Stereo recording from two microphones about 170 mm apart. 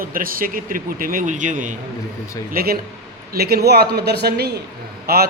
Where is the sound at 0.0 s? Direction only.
55° right (ahead or behind).